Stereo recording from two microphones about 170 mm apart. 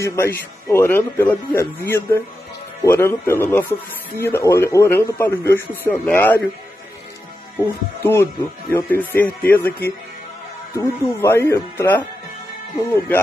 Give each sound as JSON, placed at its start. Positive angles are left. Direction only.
{"t": 0.0, "sound": "speech", "side_deg": 15}
{"t": 7.5, "sound": "speech", "side_deg": 15}
{"t": 10.8, "sound": "speech", "side_deg": 15}